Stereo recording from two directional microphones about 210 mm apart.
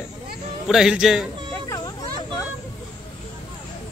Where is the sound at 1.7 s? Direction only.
20° left (ahead or behind).